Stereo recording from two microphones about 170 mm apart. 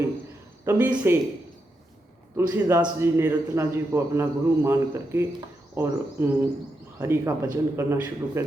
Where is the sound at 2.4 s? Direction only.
20° right (ahead or behind).